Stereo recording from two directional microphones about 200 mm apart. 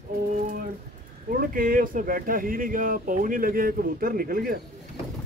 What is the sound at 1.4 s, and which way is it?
Speech, 45° right (ahead or behind).